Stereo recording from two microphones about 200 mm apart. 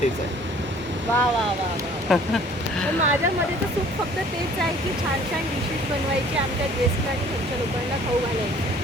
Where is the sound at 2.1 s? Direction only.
Centre (ahead or behind).